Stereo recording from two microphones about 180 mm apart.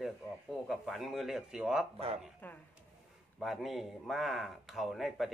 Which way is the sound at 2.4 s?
10° left (ahead or behind).